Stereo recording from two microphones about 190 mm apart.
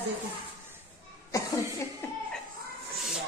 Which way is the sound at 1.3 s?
15° left (ahead or behind).